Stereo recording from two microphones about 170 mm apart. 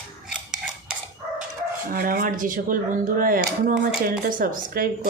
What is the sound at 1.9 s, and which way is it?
Speech, 55° right (ahead or behind).